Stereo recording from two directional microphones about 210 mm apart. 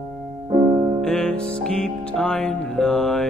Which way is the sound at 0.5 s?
25° right (ahead or behind).